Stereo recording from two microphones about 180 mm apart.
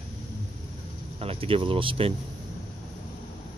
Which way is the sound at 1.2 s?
30° right (ahead or behind).